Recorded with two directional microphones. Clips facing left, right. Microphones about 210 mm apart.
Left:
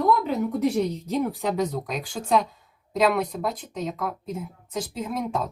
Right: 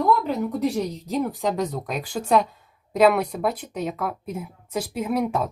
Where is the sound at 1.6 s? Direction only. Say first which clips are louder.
Even; 5° right (ahead or behind).